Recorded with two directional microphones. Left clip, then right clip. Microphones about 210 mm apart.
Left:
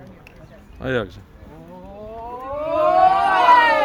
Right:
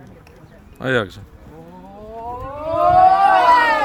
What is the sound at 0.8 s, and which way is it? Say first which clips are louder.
Speech: right 4 dB; 25° right (ahead or behind).